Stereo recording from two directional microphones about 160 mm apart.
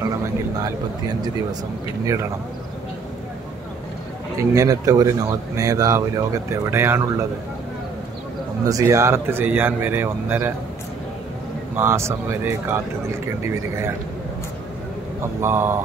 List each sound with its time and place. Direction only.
4.4 s speech: 20° right (ahead or behind)
8.6 s speech: 20° right (ahead or behind)
11.7 s speech: 15° right (ahead or behind)
15.4 s speech: 15° right (ahead or behind)